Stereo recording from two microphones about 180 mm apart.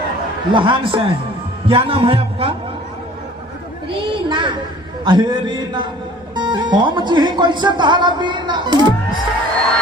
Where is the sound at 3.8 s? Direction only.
30° right (ahead or behind).